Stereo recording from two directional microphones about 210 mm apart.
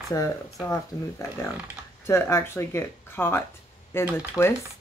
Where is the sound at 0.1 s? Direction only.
15° left (ahead or behind).